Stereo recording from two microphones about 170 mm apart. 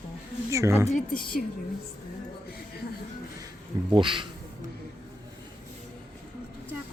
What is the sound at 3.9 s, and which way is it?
Speech, 30° right (ahead or behind).